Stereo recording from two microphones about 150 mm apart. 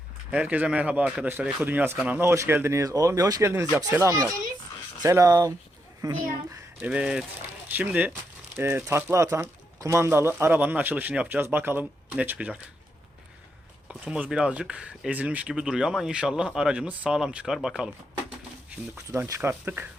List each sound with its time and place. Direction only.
0.3 s speech: 10° right (ahead or behind); by 6.2 s 25° right (ahead or behind)
6.8 s speech: 5° right (ahead or behind)
13.8 s speech: 5° right (ahead or behind)
19.0 s speech: 20° right (ahead or behind)